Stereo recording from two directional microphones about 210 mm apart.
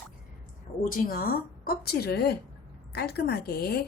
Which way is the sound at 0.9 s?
45° left (ahead or behind).